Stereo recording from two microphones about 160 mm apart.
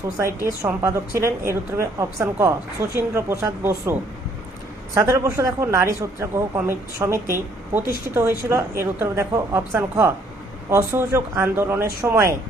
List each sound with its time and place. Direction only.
0.4 s a woman's voice: 20° right (ahead or behind)
4.9 s a woman's voice: 20° right (ahead or behind)